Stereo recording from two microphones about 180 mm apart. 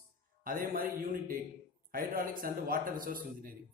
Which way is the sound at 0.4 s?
50° right (ahead or behind).